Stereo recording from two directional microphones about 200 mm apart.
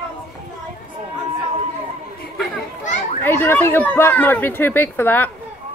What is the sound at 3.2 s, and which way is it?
Speech, 10° left (ahead or behind).